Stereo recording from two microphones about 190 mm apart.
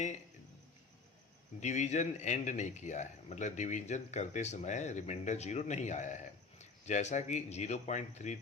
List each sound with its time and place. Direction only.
1.6 s speech: 40° left (ahead or behind)